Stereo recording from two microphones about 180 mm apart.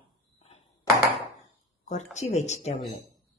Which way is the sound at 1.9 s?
40° left (ahead or behind).